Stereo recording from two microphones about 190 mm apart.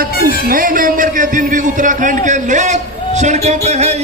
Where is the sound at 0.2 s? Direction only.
50° right (ahead or behind).